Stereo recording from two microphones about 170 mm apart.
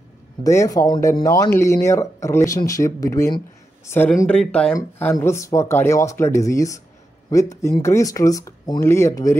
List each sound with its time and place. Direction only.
0.4 s speech: 20° left (ahead or behind)
4.7 s speech: 15° left (ahead or behind)